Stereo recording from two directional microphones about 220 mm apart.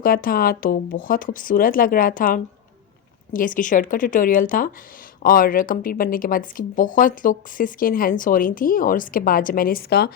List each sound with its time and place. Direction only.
0.0 s speech: 40° left (ahead or behind)